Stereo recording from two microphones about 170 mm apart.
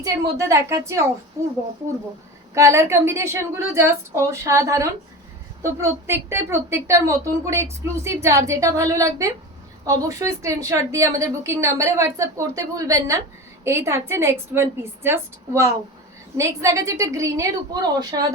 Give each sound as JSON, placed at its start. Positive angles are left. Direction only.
{"t": 0.0, "sound": "a woman's voice", "side_deg": -20}
{"t": 2.6, "sound": "a woman's voice", "side_deg": -15}